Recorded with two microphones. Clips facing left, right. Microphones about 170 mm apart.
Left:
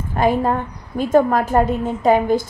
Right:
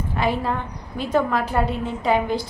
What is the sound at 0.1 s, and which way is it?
A woman's voice, 45° left (ahead or behind).